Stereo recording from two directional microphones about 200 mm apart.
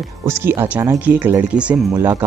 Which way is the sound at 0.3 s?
10° right (ahead or behind).